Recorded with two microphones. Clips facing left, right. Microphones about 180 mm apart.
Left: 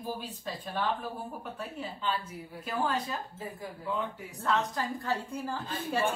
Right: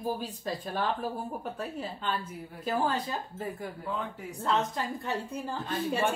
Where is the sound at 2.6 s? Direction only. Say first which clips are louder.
Right 2 dB; 30° right (ahead or behind).